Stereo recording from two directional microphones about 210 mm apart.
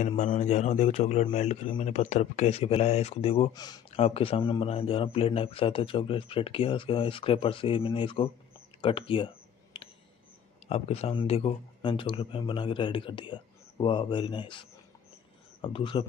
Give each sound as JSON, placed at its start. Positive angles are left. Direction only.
{"t": 0.2, "sound": "a man's voice", "side_deg": 35}
{"t": 9.7, "sound": "a sound", "side_deg": 25}
{"t": 10.7, "sound": "a man's voice", "side_deg": 30}